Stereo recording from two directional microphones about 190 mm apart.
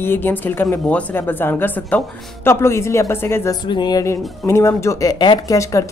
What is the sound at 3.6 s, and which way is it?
Speech, 25° left (ahead or behind).